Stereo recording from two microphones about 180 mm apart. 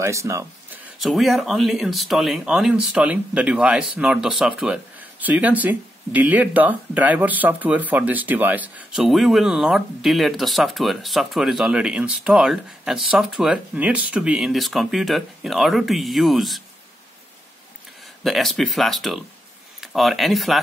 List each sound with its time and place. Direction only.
0.0 s speech: 15° right (ahead or behind)
0.9 s speech: centre (ahead or behind)
18.2 s speech: centre (ahead or behind)